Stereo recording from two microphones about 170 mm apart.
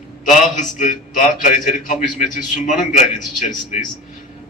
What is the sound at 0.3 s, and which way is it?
A man's voice, 45° left (ahead or behind).